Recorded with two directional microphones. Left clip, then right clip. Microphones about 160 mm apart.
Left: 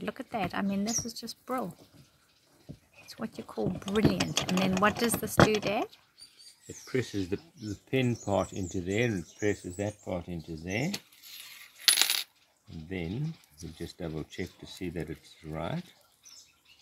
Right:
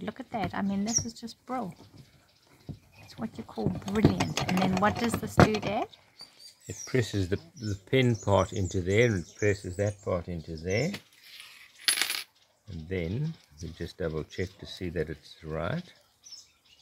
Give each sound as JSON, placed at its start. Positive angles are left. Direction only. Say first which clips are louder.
{"t": 0.0, "sound": "speech", "louder": "even", "side_deg": 5}
{"t": 3.1, "sound": "speech", "louder": "even", "side_deg": 5}
{"t": 6.7, "sound": "speech", "louder": "right 3 dB", "side_deg": -90}
{"t": 7.9, "sound": "speech", "louder": "right 4 dB", "side_deg": -50}
{"t": 9.4, "sound": "speech", "louder": "right 3 dB", "side_deg": -20}
{"t": 10.9, "sound": "coin", "louder": "left 1 dB", "side_deg": 25}
{"t": 12.8, "sound": "speech", "louder": "right 3 dB", "side_deg": -20}